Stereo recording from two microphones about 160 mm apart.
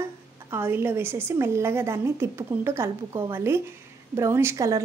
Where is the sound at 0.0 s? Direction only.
15° right (ahead or behind).